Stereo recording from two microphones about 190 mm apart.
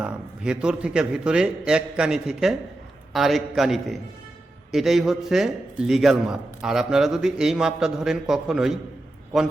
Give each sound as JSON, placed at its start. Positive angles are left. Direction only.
{"t": 0.0, "sound": "a man's voice", "side_deg": -5}